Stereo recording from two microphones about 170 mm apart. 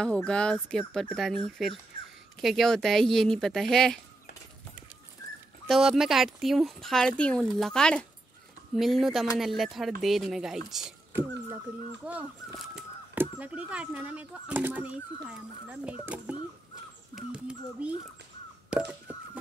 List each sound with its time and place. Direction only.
0.0 s speech: 5° left (ahead or behind)
5.7 s speech: 5° right (ahead or behind)
12.1 s speech: 5° right (ahead or behind)
17.1 s speech: 5° right (ahead or behind)